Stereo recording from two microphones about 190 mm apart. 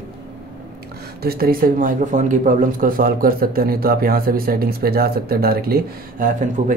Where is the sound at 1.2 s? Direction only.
55° right (ahead or behind).